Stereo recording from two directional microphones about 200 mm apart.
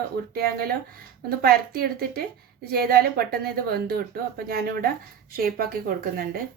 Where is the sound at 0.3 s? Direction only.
50° right (ahead or behind).